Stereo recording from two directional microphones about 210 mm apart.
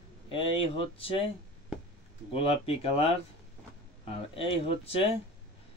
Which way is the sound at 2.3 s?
30° left (ahead or behind).